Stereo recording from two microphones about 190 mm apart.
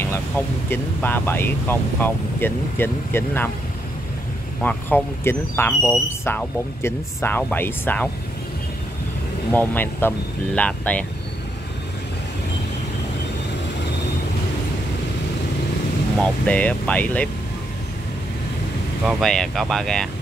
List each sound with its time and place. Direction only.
0.7 s speech: 10° left (ahead or behind)
4.6 s speech: 10° left (ahead or behind)
9.5 s speech: 10° left (ahead or behind)
16.2 s speech: 5° left (ahead or behind)
19.0 s speech: centre (ahead or behind)